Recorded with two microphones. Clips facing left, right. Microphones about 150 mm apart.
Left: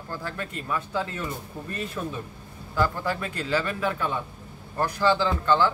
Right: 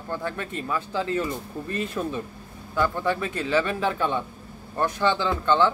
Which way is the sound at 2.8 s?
20° right (ahead or behind).